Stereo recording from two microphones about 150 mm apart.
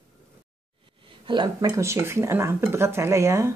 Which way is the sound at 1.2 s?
30° right (ahead or behind).